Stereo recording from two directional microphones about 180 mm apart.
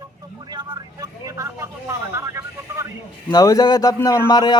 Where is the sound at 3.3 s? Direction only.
20° left (ahead or behind).